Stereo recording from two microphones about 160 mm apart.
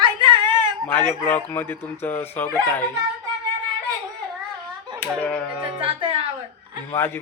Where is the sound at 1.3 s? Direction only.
10° left (ahead or behind).